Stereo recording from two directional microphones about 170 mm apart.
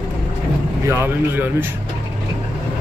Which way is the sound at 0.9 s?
15° right (ahead or behind).